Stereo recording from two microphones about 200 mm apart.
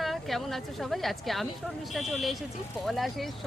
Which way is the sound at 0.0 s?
Centre (ahead or behind).